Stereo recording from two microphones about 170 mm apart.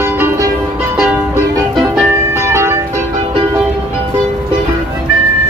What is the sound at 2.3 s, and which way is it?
Music, 15° right (ahead or behind).